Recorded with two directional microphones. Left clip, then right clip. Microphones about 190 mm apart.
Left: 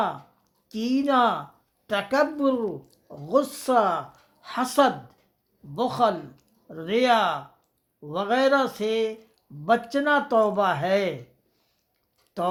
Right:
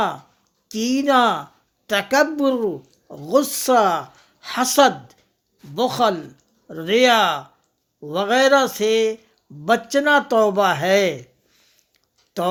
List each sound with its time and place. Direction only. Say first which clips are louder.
0.7 s a woman's voice: right 5 dB; 50° right (ahead or behind)
12.4 s a woman's voice: right 4 dB; 50° right (ahead or behind)